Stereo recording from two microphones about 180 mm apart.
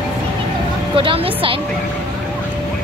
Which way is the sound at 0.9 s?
30° right (ahead or behind).